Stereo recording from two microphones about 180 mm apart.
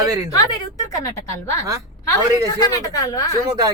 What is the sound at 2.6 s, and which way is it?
Speech, 20° left (ahead or behind).